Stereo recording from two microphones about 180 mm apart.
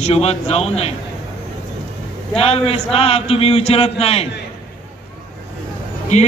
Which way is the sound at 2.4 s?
35° left (ahead or behind).